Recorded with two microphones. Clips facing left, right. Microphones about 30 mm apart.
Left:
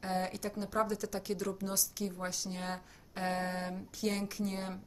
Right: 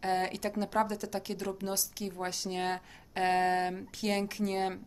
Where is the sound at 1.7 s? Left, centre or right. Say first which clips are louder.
Right 1 dB; right.